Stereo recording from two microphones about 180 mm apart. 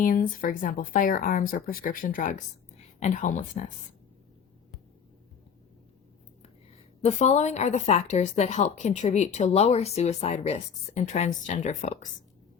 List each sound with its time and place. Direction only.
0.0 s speech: 50° left (ahead or behind)
7.0 s a woman's voice: 40° left (ahead or behind)